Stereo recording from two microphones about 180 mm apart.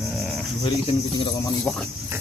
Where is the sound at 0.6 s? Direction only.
30° left (ahead or behind).